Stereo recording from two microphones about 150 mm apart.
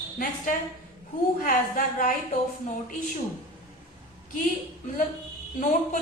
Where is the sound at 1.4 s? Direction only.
65° left (ahead or behind).